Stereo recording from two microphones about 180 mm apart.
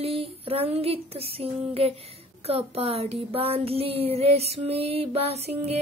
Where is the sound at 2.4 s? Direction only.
35° right (ahead or behind).